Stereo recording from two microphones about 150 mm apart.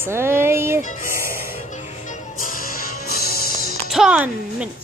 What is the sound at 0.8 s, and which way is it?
Speech, 60° left (ahead or behind).